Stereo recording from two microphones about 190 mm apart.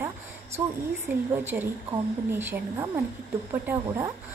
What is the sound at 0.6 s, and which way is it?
A woman's voice, 10° right (ahead or behind).